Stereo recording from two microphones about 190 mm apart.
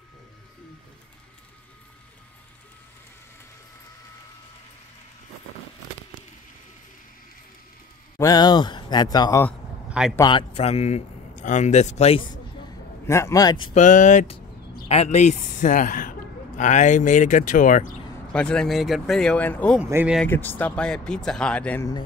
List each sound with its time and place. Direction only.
8.2 s speech: 20° left (ahead or behind)
9.8 s a sound: 5° right (ahead or behind)
10.1 s speech: 20° left (ahead or behind)
10.5 s speech: 35° left (ahead or behind)
13.0 s a man's voice: 15° left (ahead or behind)
13.7 s a man's voice: 40° left (ahead or behind)
18.3 s speech: 5° left (ahead or behind)
19.8 s speech: 10° right (ahead or behind)
20.2 s speech: 10° left (ahead or behind)